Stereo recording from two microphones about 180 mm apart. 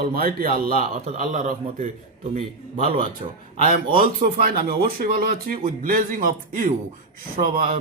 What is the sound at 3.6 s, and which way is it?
A man's voice, 50° right (ahead or behind).